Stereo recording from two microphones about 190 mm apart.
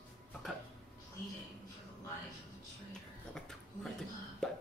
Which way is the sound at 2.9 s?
5° left (ahead or behind).